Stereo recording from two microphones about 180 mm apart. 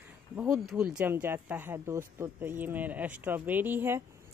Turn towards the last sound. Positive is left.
turn(degrees=-10)  # may be behind; listen again after turning